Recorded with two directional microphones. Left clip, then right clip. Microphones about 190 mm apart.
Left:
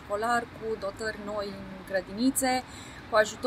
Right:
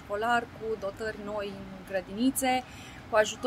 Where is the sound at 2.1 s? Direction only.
30° right (ahead or behind).